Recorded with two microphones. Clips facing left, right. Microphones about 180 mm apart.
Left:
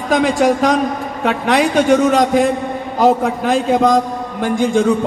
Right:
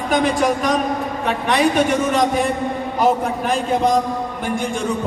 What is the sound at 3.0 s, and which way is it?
A man's voice, 90° left.